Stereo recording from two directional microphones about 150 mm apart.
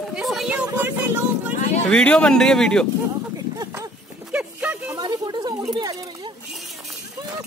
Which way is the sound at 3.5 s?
25° right (ahead or behind).